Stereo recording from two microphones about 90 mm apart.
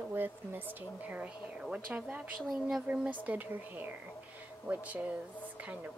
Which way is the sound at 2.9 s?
15° right (ahead or behind).